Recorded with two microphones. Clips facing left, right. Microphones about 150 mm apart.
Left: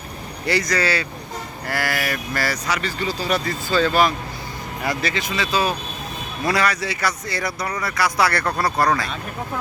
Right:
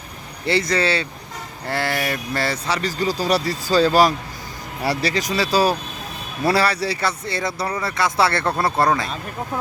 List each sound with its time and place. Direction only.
0.4 s speech: 25° right (ahead or behind)